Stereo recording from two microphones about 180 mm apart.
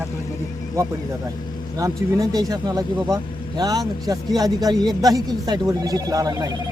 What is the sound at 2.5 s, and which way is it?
Speech, 20° right (ahead or behind).